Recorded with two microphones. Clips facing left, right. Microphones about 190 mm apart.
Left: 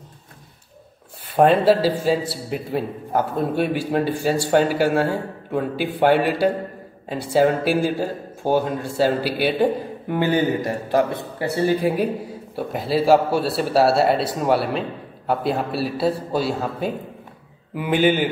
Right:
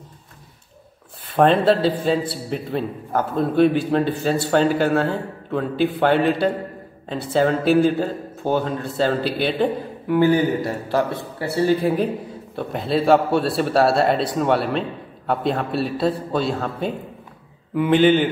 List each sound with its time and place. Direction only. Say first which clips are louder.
1.3 s a man's voice: left 1 dB; 10° left (ahead or behind)